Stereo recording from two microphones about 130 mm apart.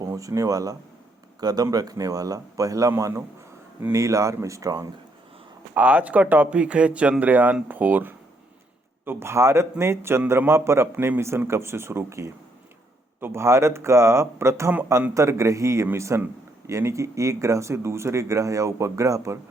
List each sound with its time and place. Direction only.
0.0 s a man's voice: 25° right (ahead or behind)
5.7 s a man's voice: 10° right (ahead or behind)